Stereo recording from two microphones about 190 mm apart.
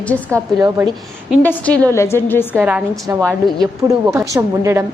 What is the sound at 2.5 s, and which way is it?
A woman's voice, 10° right (ahead or behind).